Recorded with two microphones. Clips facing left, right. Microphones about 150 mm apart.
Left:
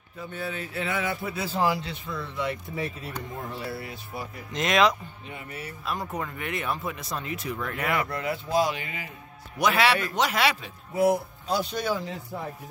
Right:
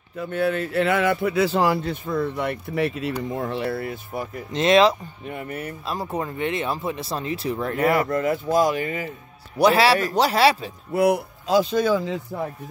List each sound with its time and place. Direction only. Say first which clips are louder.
0.2 s speech: right 10 dB; 70° right (ahead or behind)
1.8 s speech: right 10 dB; 50° right (ahead or behind)
4.5 s speech: right 6 dB; 30° right (ahead or behind)
5.2 s speech: right 10 dB; 55° right (ahead or behind)
5.9 s speech: right 3 dB; 30° right (ahead or behind)
9.6 s speech: right 6 dB; 35° right (ahead or behind)
10.9 s speech: right 3 dB; 70° right (ahead or behind)